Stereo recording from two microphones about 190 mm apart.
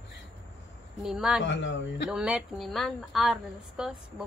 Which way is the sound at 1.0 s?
5° right (ahead or behind).